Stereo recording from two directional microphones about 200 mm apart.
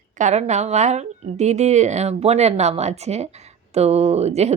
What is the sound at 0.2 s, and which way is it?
A woman's voice, 35° right (ahead or behind).